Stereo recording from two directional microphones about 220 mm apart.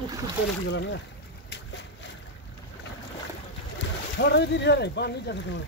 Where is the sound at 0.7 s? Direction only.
55° left (ahead or behind).